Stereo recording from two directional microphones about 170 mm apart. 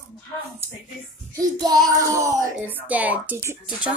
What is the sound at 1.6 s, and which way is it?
Music, 25° right (ahead or behind).